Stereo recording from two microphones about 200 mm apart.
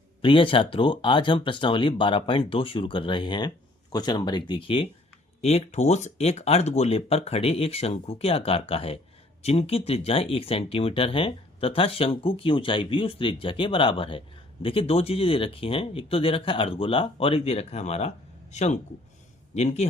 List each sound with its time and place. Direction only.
0.2 s speech: 25° left (ahead or behind)